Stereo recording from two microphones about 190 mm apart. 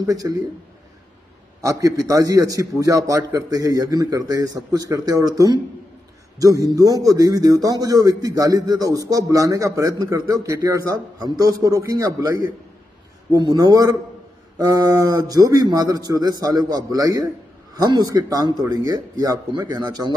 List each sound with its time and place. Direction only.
0.0 s a man's voice: 20° right (ahead or behind)
1.6 s a man's voice: 15° right (ahead or behind)